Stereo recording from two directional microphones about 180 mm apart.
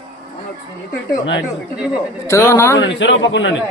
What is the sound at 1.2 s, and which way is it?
Speech, 90° left.